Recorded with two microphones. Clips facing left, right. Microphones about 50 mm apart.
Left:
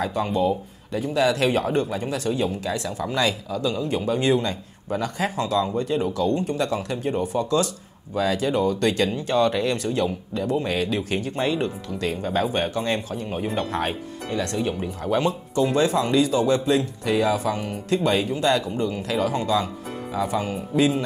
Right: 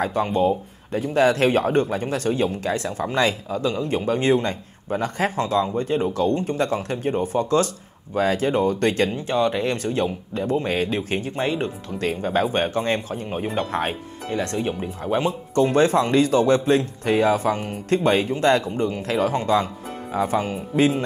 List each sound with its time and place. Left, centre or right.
0.0 s speech: right
15.5 s speech: right